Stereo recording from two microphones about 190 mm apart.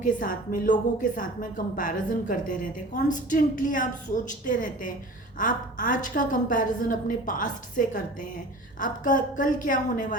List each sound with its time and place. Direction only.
0.0 s a woman's voice: 45° left (ahead or behind)